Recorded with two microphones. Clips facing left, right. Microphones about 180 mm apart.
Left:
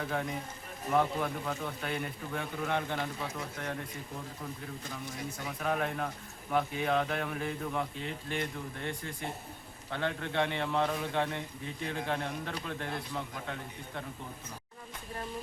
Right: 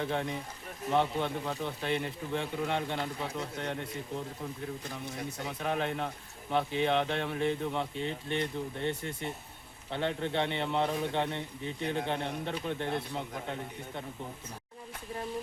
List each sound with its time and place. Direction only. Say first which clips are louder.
0.0 s speech: right 2 dB; 25° right (ahead or behind)
5.5 s speech: even; 25° right (ahead or behind)